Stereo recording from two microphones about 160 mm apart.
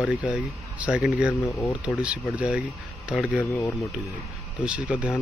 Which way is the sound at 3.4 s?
20° left (ahead or behind).